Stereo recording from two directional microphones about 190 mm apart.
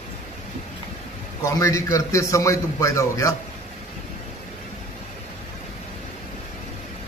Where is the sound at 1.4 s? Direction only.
15° left (ahead or behind).